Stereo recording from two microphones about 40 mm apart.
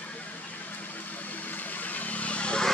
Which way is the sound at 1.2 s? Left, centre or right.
Left.